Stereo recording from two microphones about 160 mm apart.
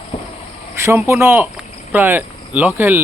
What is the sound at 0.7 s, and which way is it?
Speech, 15° right (ahead or behind).